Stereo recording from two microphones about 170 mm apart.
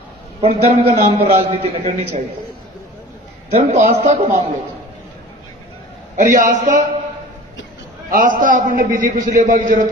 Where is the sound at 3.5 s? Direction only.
40° right (ahead or behind).